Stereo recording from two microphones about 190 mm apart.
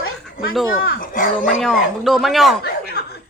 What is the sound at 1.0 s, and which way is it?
Speech, 45° left (ahead or behind).